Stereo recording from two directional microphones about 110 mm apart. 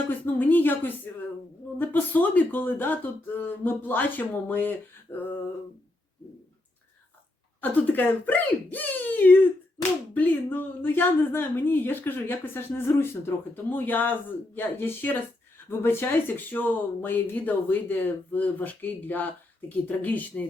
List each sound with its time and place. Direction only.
0.3 s a woman's voice: 15° left (ahead or behind)
7.6 s a woman's voice: 15° left (ahead or behind)